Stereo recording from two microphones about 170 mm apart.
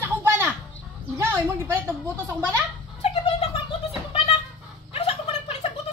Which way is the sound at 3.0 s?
35° left (ahead or behind).